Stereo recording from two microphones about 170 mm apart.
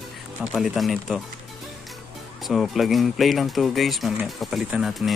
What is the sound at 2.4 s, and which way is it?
Speech, centre (ahead or behind).